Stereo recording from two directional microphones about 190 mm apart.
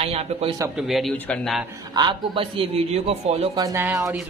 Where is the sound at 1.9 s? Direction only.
20° right (ahead or behind).